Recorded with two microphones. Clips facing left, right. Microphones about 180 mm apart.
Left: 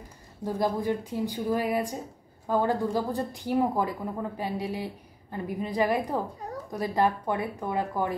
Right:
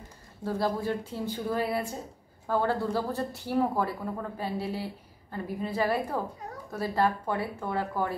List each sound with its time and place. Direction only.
0.4 s speech: 15° left (ahead or behind)